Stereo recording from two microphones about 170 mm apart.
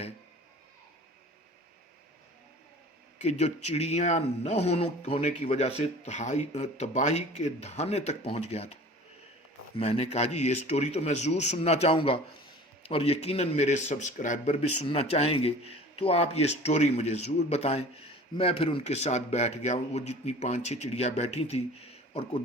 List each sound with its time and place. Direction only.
3.2 s speech: 40° left (ahead or behind)